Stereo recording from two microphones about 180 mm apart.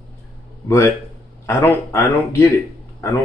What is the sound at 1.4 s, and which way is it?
Speech, 15° left (ahead or behind).